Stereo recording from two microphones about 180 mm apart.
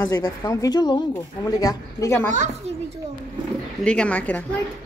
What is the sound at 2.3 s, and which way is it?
Speech, 40° right (ahead or behind).